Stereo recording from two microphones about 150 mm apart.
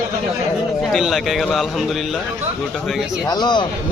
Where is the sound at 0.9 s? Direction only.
Centre (ahead or behind).